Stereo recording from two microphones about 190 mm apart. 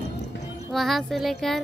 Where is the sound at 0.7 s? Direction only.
Centre (ahead or behind).